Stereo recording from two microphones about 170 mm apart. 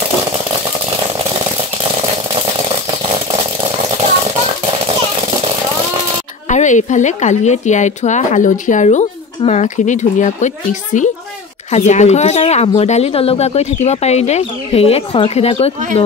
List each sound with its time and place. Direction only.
6.5 s speech: 45° left (ahead or behind)